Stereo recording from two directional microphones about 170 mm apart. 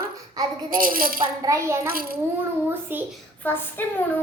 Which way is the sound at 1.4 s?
15° right (ahead or behind).